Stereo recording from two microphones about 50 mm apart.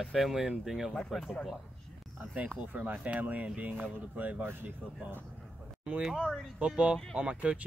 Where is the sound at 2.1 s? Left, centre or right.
Right.